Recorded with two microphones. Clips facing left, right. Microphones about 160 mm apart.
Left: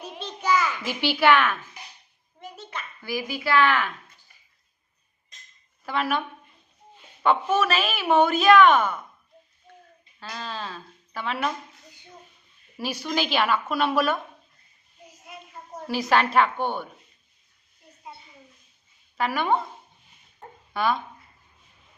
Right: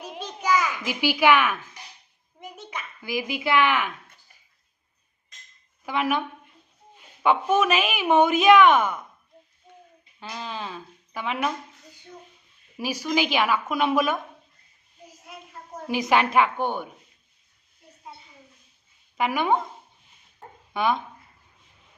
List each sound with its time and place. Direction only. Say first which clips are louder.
0.0 s a sound: even; 10° right (ahead or behind)
2.6 s speech: even; 15° right (ahead or behind)
5.8 s a woman's voice: right 1 dB; 15° right (ahead or behind)
9.7 s a sound: even; 15° right (ahead or behind)
10.2 s speech: right 1 dB; 15° right (ahead or behind)
12.8 s a woman's voice: right 2 dB; 10° right (ahead or behind)
15.3 s a sound: even; centre (ahead or behind)
15.9 s a woman's voice: right 1 dB; 15° right (ahead or behind)
19.1 s a woman's voice: right 1 dB; 15° right (ahead or behind)
20.7 s speech: right 1 dB; 20° right (ahead or behind)